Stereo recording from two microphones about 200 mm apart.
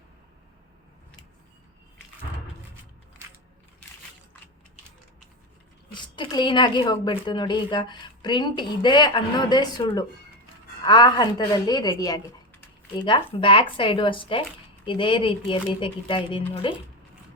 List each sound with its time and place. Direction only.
5.9 s a woman's voice: 20° left (ahead or behind)